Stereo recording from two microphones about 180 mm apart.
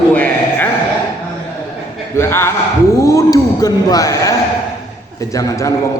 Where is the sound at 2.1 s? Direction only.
15° left (ahead or behind).